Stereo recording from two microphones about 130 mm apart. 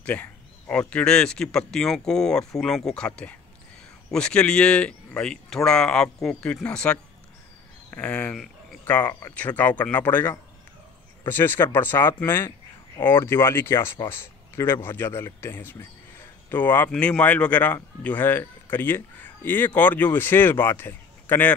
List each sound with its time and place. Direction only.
0.0 s speech: 10° left (ahead or behind)